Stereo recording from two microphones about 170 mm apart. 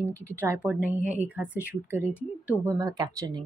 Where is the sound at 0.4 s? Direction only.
10° right (ahead or behind).